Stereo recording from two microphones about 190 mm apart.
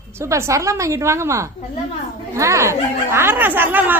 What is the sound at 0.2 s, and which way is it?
Speech, 15° right (ahead or behind).